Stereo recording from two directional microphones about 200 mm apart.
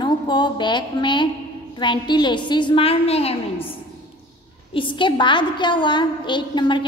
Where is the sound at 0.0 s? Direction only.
20° left (ahead or behind).